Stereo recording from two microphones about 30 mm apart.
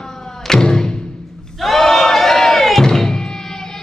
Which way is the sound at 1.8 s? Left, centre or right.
Centre.